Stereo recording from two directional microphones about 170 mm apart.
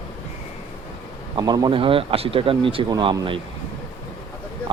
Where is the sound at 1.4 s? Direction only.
20° right (ahead or behind).